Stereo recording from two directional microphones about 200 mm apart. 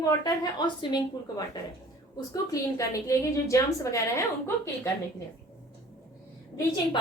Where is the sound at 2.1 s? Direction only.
15° left (ahead or behind).